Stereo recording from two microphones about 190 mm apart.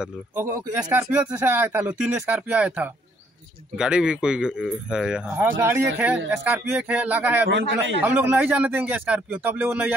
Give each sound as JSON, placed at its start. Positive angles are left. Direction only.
{"t": 0.0, "sound": "speech", "side_deg": -15}
{"t": 7.4, "sound": "a man's voice", "side_deg": -80}
{"t": 8.0, "sound": "speech", "side_deg": -10}